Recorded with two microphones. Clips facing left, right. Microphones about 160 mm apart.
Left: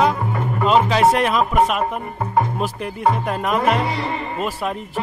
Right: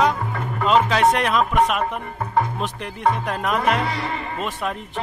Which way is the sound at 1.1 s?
5° left (ahead or behind).